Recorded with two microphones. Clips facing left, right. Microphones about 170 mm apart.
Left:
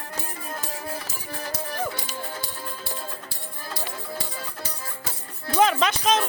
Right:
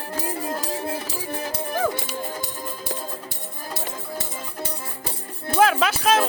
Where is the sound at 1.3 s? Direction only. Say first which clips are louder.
Right 3 dB; 25° right (ahead or behind).